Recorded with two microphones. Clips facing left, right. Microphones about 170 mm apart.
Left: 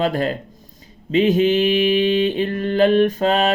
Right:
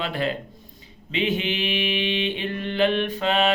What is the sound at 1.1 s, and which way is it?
Mantra, 40° left (ahead or behind).